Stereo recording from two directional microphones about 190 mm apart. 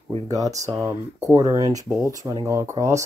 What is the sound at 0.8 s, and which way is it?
Speech, 15° right (ahead or behind).